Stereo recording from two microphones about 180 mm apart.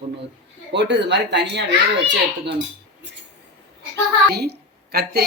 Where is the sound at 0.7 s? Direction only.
75° right (ahead or behind).